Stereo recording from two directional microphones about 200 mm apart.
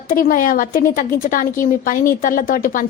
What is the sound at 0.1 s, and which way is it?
A woman's voice, 45° left (ahead or behind).